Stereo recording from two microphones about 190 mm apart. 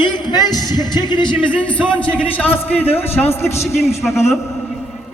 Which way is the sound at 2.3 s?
10° left (ahead or behind).